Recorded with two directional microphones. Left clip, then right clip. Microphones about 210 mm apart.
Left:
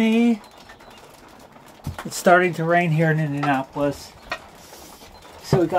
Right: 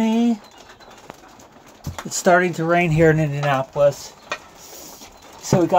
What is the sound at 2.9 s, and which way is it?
Speech, 45° right (ahead or behind).